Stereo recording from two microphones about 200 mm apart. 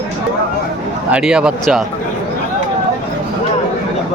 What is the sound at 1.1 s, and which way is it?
Speech, 5° right (ahead or behind).